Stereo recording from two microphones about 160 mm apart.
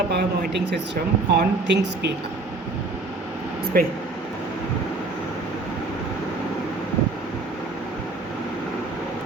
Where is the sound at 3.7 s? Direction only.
70° right (ahead or behind).